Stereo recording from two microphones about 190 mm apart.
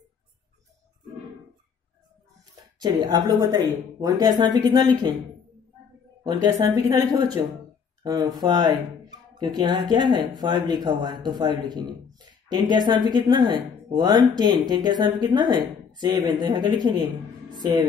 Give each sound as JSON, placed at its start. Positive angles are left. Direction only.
{"t": 2.8, "sound": "speech", "side_deg": -20}
{"t": 6.2, "sound": "speech", "side_deg": -20}